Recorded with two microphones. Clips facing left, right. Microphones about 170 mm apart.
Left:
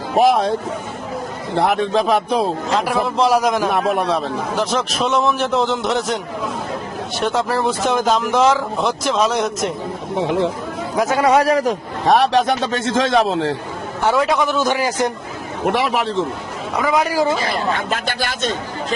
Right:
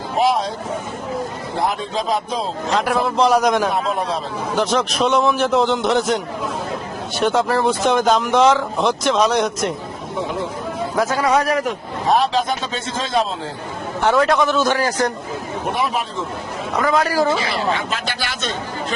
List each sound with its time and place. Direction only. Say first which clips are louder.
0.2 s speech: left 4 dB; 55° left (ahead or behind)
1.5 s speech: left 6 dB; 65° left (ahead or behind)
2.7 s speech: right 1 dB; centre (ahead or behind)
3.7 s speech: left 3 dB; 60° left (ahead or behind)
4.5 s speech: right 4 dB; centre (ahead or behind)
7.2 s speech: right 2 dB; centre (ahead or behind)
10.2 s a man's voice: left 6 dB; 70° left (ahead or behind)
11.2 s speech: left 5 dB; 30° left (ahead or behind)
12.0 s a man's voice: left 3 dB; 75° left (ahead or behind)
14.0 s a man's voice: right 1 dB; 5° left (ahead or behind)
15.6 s a man's voice: left 5 dB; 85° left
16.9 s a man's voice: left 1 dB; 15° left (ahead or behind)
17.3 s speech: even; 50° left (ahead or behind)